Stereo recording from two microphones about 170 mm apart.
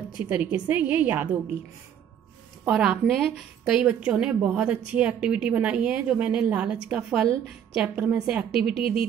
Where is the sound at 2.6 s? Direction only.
5° right (ahead or behind).